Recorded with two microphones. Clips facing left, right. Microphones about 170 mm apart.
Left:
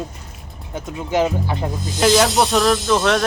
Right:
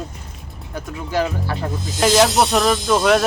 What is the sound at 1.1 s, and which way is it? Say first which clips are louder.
Speech: left 3 dB; 20° left (ahead or behind).